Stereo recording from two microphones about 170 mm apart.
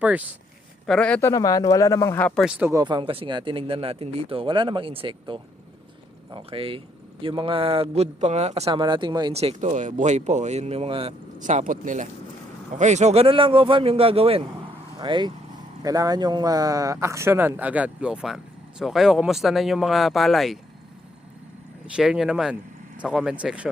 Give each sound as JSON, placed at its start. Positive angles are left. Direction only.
{"t": 0.0, "sound": "speech", "side_deg": -10}
{"t": 0.9, "sound": "a man's voice", "side_deg": 5}
{"t": 1.3, "sound": "speech", "side_deg": 20}
{"t": 2.4, "sound": "speech", "side_deg": -10}
{"t": 2.7, "sound": "speech", "side_deg": -25}
{"t": 8.8, "sound": "a man's voice", "side_deg": -25}
{"t": 9.3, "sound": "speech", "side_deg": -40}
{"t": 11.3, "sound": "a man's voice", "side_deg": -45}
{"t": 21.9, "sound": "speech", "side_deg": -5}